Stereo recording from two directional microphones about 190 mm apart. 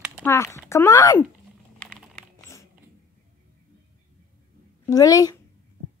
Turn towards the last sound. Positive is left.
turn(degrees=20)  # may be behind; listen again after turning